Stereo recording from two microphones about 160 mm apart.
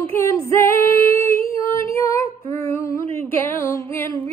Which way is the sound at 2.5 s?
20° left (ahead or behind).